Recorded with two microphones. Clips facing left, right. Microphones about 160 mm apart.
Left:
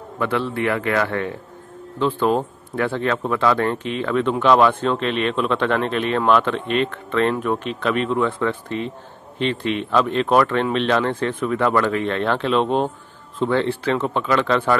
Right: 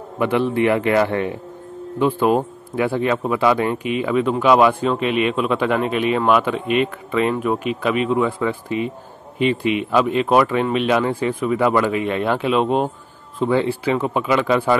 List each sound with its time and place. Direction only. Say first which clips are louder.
0.2 s speech: right 4 dB; 15° right (ahead or behind)